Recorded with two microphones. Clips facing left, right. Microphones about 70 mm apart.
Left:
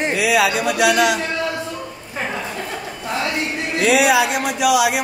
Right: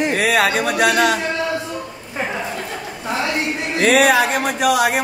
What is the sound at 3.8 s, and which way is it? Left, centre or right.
Speech, right.